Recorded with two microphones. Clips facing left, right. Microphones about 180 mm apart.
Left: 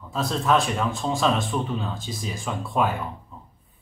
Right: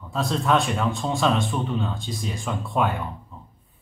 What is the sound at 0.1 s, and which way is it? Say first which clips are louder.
Speech: even; centre (ahead or behind).